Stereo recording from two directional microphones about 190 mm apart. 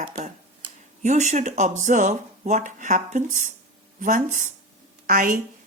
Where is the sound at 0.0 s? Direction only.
35° right (ahead or behind).